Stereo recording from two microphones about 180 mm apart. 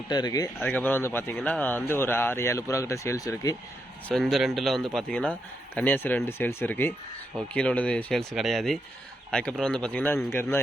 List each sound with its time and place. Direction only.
0.1 s speech: 20° left (ahead or behind)
0.6 s a man's voice: 10° left (ahead or behind)
4.1 s a man's voice: centre (ahead or behind)